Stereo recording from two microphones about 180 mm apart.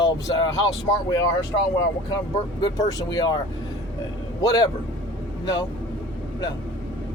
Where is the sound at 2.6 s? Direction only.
20° left (ahead or behind).